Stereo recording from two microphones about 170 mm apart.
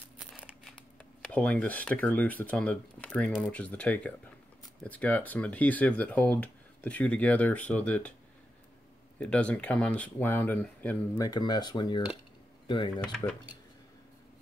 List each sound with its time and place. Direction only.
1.2 s speech: 5° left (ahead or behind)
9.2 s speech: 5° left (ahead or behind)
11.1 s speech: 25° left (ahead or behind)